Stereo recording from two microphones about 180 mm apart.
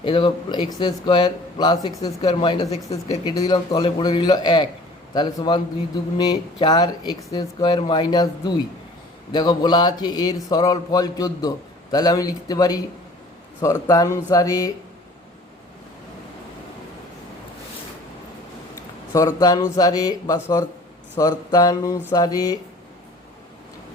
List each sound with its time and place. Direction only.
0.0 s a man's voice: 30° left (ahead or behind)
19.1 s a man's voice: 20° left (ahead or behind)